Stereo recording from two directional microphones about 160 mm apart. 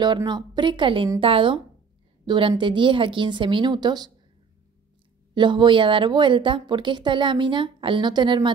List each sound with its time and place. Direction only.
0.0 s speech: 25° right (ahead or behind)
5.3 s speech: 30° right (ahead or behind)